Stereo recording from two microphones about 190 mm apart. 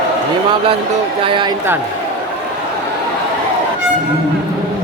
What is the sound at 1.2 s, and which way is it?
Speech, 25° right (ahead or behind).